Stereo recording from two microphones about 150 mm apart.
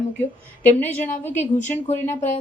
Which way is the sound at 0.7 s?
55° left (ahead or behind).